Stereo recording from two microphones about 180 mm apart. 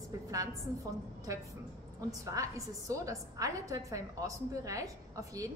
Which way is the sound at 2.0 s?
20° right (ahead or behind).